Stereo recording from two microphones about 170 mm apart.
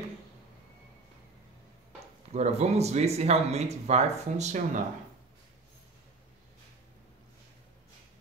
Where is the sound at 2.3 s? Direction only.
40° right (ahead or behind).